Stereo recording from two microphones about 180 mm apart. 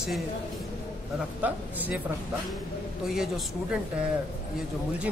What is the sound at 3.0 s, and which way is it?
Speech, centre (ahead or behind).